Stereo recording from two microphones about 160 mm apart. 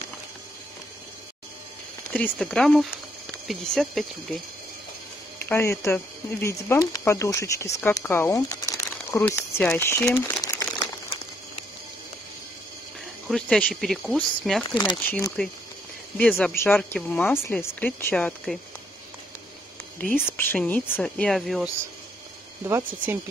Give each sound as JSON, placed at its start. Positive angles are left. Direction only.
{"t": 2.1, "sound": "speech", "side_deg": 5}
{"t": 5.5, "sound": "speech", "side_deg": 15}
{"t": 10.4, "sound": "crumpling", "side_deg": 15}
{"t": 13.3, "sound": "speech", "side_deg": 5}
{"t": 16.2, "sound": "speech", "side_deg": 5}
{"t": 20.2, "sound": "speech", "side_deg": 15}
{"t": 22.7, "sound": "speech", "side_deg": -15}